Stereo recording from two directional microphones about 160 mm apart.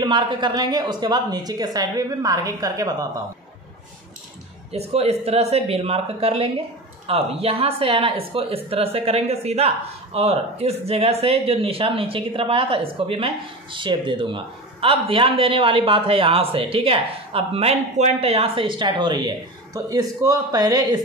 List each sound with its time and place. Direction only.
0.0 s a woman's voice: 30° right (ahead or behind)
4.7 s speech: 40° right (ahead or behind); by 21.0 s 25° right (ahead or behind)